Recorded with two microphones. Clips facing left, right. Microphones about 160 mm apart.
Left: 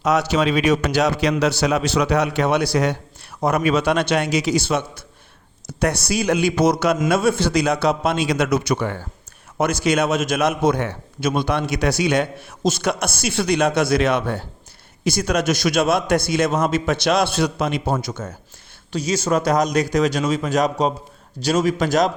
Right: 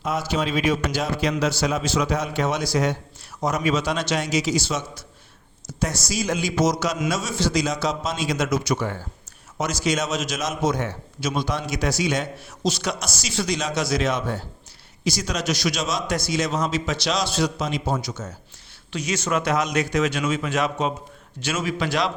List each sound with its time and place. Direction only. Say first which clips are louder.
0.0 s a man's voice: left 6 dB; 75° left (ahead or behind); by 18.3 s 55° left (ahead or behind)
18.9 s a man's voice: left 5 dB; 35° left (ahead or behind)